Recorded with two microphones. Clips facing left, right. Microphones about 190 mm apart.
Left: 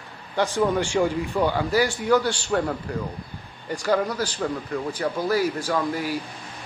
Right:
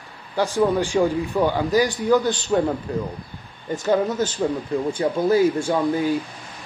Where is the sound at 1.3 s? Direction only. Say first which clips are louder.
Right 2 dB; 15° right (ahead or behind).